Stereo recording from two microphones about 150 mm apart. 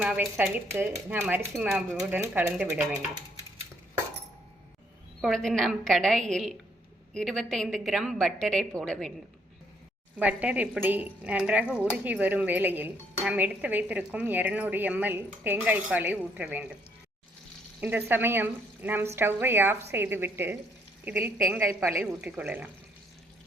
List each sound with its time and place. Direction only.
0.0 s a woman's voice: 5° right (ahead or behind)
5.2 s a woman's voice: 5° left (ahead or behind)
10.2 s speech: 10° right (ahead or behind)
17.7 s speech: 10° right (ahead or behind)